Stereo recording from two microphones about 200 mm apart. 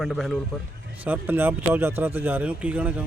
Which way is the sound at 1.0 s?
10° right (ahead or behind).